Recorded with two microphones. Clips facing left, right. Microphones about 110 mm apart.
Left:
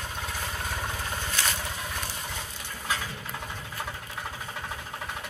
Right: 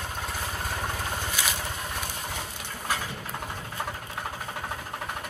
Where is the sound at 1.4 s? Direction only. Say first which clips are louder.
Left 1 dB; 10° right (ahead or behind).